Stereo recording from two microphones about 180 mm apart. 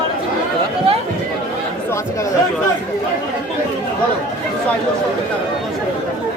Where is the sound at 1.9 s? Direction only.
15° left (ahead or behind).